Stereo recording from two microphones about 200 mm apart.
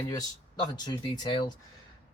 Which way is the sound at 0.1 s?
20° left (ahead or behind).